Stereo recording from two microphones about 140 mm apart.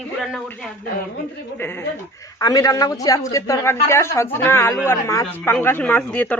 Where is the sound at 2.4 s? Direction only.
25° left (ahead or behind).